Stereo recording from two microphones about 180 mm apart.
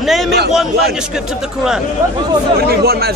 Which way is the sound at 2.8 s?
60° right (ahead or behind).